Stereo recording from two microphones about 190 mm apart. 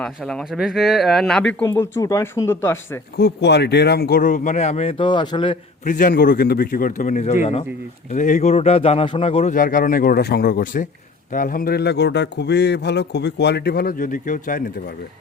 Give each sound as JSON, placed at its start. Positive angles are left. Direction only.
{"t": 0.0, "sound": "speech", "side_deg": 0}
{"t": 3.2, "sound": "speech", "side_deg": 60}
{"t": 5.8, "sound": "a man's voice", "side_deg": 45}
{"t": 9.6, "sound": "speech", "side_deg": 45}